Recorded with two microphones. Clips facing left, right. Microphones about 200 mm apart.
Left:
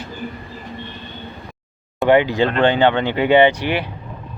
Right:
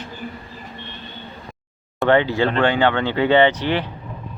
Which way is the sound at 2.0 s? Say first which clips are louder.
Left 2 dB; 15° left (ahead or behind).